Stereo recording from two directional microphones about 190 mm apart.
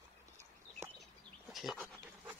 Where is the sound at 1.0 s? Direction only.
Centre (ahead or behind).